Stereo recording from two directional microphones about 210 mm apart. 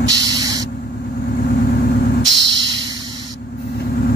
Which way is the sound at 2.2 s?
60° right (ahead or behind).